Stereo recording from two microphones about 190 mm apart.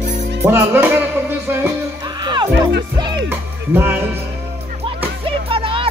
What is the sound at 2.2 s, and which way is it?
Music, 25° right (ahead or behind).